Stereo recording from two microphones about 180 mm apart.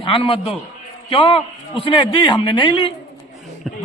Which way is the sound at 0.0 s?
30° left (ahead or behind).